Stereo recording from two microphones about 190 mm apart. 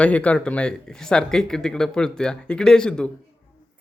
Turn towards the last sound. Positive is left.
turn(degrees=5)  # may be behind; listen again after turning